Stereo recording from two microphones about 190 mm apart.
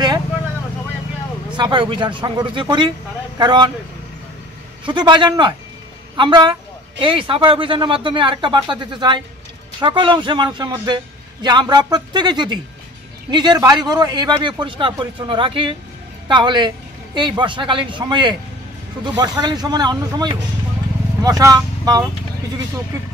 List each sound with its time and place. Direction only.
1.6 s speech: 25° right (ahead or behind)
4.8 s a man's voice: 25° right (ahead or behind)